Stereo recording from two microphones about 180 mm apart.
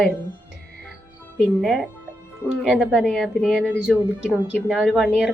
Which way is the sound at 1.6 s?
5° right (ahead or behind).